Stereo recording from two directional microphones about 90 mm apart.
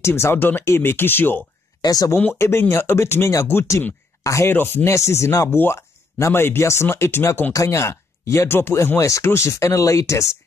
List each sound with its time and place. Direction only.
0.0 s speech: 30° left (ahead or behind)
1.8 s speech: 45° left (ahead or behind)
2.3 s speech: 30° left (ahead or behind)